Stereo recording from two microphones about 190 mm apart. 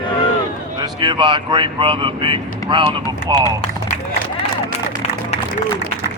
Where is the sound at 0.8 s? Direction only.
25° right (ahead or behind).